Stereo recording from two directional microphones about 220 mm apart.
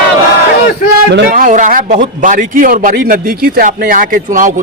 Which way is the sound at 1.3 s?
35° right (ahead or behind).